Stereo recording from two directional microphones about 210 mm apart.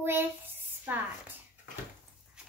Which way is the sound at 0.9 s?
10° right (ahead or behind).